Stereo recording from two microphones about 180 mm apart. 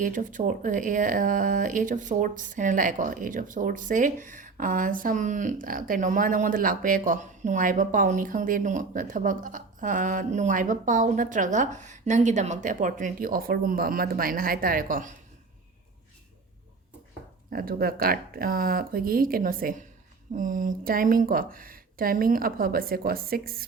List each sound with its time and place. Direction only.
0.0 s speech: 45° right (ahead or behind)
17.5 s speech: 55° right (ahead or behind)